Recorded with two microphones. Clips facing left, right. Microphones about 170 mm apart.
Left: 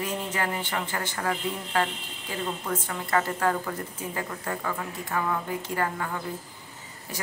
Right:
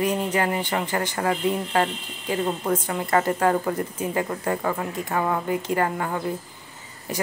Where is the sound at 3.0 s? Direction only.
45° right (ahead or behind).